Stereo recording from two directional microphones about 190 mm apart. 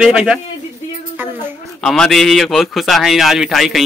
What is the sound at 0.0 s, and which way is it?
Speech, 5° right (ahead or behind).